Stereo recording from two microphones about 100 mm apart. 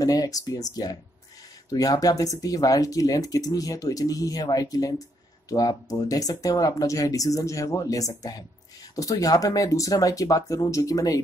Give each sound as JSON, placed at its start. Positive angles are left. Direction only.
{"t": 0.0, "sound": "speech", "side_deg": 35}